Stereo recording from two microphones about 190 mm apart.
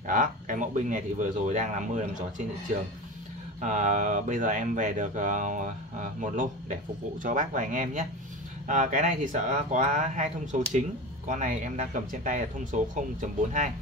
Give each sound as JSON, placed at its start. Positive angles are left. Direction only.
{"t": 0.0, "sound": "speech", "side_deg": -45}
{"t": 3.6, "sound": "speech", "side_deg": -40}